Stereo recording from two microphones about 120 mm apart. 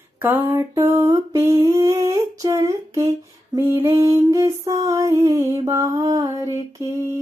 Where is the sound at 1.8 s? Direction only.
30° right (ahead or behind).